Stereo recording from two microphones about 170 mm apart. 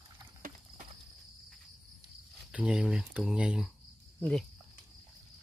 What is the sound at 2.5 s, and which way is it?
Speech, 5° right (ahead or behind).